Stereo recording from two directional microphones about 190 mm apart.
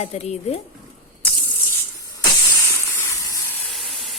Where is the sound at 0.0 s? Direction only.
35° left (ahead or behind).